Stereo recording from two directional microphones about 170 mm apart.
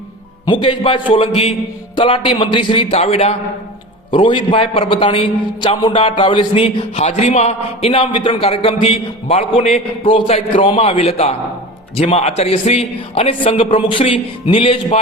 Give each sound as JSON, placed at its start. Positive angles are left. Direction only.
{"t": 0.4, "sound": "a man's voice", "side_deg": 30}